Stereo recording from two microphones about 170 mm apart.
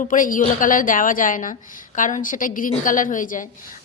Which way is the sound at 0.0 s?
50° left (ahead or behind).